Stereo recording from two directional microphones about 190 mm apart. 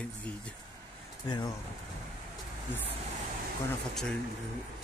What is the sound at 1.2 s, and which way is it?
Speech, 20° left (ahead or behind).